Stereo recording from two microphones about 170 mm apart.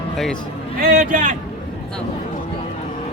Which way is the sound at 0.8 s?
55° right (ahead or behind).